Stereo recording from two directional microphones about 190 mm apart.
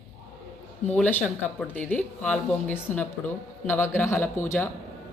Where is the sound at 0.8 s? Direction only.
10° left (ahead or behind).